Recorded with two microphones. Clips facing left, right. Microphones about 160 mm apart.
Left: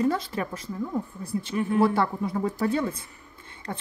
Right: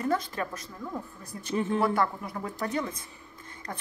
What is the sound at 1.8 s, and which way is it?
Speech, 30° left (ahead or behind).